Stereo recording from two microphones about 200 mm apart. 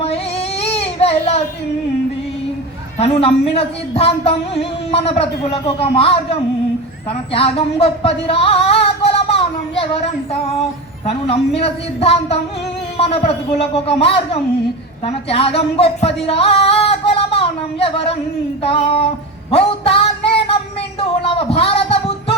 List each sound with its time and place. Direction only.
0.6 s baby cry: 30° left (ahead or behind)
3.0 s speech: 30° left (ahead or behind)
11.0 s speech: 30° left (ahead or behind)
19.5 s music: 30° left (ahead or behind)